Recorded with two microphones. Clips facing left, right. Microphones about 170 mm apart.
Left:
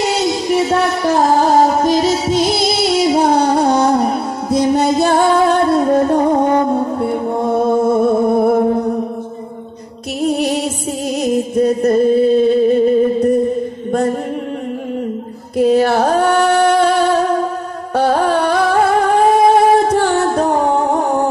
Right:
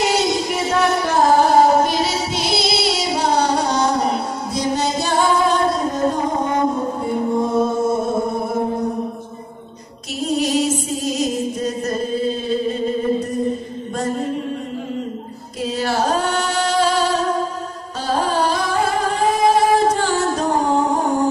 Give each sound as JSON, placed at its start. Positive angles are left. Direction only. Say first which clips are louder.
{"t": 1.9, "sound": "music", "louder": "left 7 dB", "side_deg": 45}
{"t": 10.2, "sound": "music", "louder": "left 2 dB", "side_deg": 60}
{"t": 15.5, "sound": "a sound", "louder": "left 10 dB", "side_deg": 60}
{"t": 17.9, "sound": "music", "louder": "left 6 dB", "side_deg": 60}